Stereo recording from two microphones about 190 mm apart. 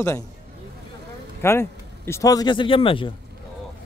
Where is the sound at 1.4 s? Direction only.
15° left (ahead or behind).